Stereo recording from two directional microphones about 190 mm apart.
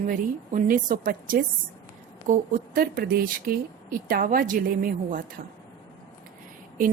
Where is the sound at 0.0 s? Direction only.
45° right (ahead or behind).